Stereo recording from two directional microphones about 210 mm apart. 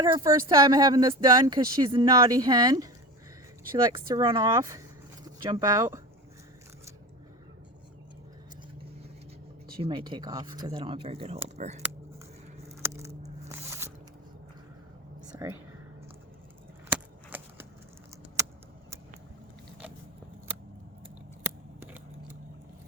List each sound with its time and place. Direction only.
0.0 s speech: 20° right (ahead or behind)
3.9 s speech: 20° right (ahead or behind)
9.8 s speech: 25° right (ahead or behind)
13.5 s music: 10° right (ahead or behind)
15.3 s whispering: 15° right (ahead or behind)
16.9 s a sound: 10° right (ahead or behind)
21.4 s scissors: 10° right (ahead or behind)